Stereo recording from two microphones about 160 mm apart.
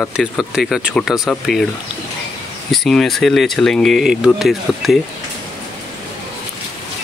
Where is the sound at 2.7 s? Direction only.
Centre (ahead or behind).